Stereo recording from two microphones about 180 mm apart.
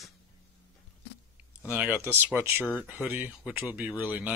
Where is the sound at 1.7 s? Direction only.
10° right (ahead or behind).